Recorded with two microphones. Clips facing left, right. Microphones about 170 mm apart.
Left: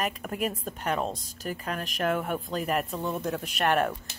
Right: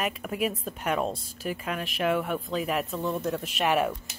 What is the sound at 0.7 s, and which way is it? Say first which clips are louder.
Speech: right 1 dB; 5° right (ahead or behind).